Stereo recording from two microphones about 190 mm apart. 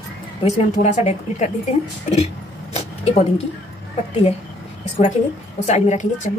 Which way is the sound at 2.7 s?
35° left (ahead or behind).